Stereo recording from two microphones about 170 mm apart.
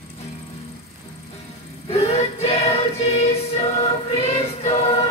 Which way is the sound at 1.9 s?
35° left (ahead or behind).